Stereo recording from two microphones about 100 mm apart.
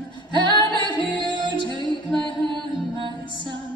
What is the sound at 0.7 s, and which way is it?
Music, 55° right (ahead or behind).